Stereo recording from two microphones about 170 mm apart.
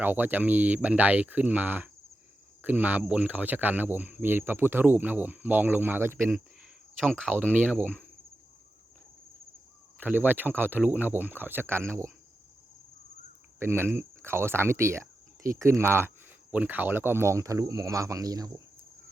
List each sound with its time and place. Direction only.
0.0 s speech: 10° right (ahead or behind)
10.0 s speech: 10° right (ahead or behind)
13.6 s speech: 15° right (ahead or behind)